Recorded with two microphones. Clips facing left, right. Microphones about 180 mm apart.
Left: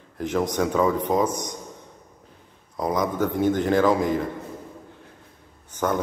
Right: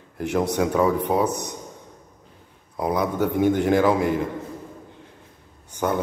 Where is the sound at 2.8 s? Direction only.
10° right (ahead or behind).